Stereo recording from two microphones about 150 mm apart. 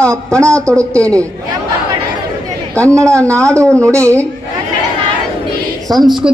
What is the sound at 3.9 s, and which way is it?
Speech, 20° right (ahead or behind).